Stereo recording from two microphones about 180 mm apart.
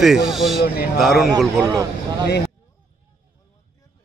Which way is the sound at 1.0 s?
Centre (ahead or behind).